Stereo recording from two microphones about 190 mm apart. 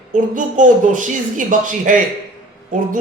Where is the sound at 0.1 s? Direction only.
40° right (ahead or behind).